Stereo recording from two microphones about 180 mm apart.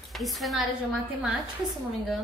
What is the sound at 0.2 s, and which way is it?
Speech, centre (ahead or behind).